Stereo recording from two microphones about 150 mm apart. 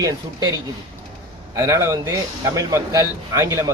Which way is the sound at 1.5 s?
20° right (ahead or behind).